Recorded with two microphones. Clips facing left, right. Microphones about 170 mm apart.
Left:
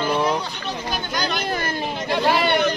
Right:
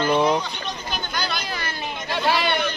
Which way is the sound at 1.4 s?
50° left (ahead or behind).